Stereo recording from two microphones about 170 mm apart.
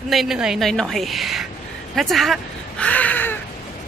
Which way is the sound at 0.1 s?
Centre (ahead or behind).